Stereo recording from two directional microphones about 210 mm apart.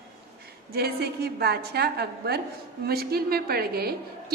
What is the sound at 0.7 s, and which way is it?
A woman's voice, 50° right (ahead or behind).